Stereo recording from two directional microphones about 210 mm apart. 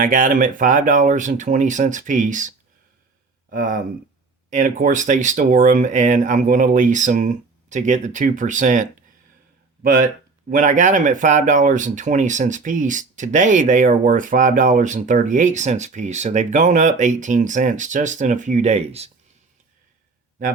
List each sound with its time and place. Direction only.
0.0 s speech: 40° right (ahead or behind)
3.5 s speech: 40° right (ahead or behind)